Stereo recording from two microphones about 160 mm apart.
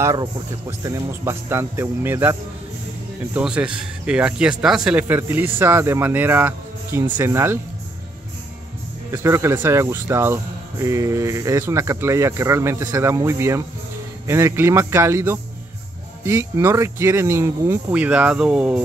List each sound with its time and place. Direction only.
0.0 s speech: 20° right (ahead or behind)
3.3 s speech: 5° right (ahead or behind)
9.1 s speech: 15° right (ahead or behind)